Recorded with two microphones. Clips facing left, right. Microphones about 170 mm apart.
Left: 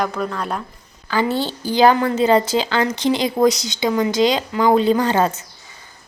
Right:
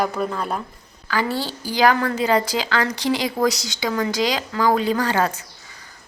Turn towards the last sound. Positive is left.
turn(degrees=25)  # may be behind; listen again after turning